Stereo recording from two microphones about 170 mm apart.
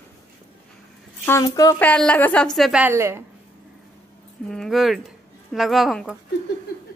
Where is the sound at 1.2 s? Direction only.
15° left (ahead or behind).